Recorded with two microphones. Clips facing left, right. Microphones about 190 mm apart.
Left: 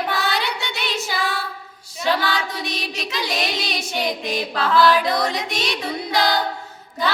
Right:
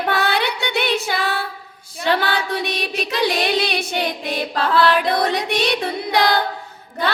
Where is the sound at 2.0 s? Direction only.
60° right (ahead or behind).